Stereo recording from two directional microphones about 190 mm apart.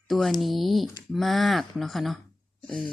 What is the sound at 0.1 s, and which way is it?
Speech, centre (ahead or behind).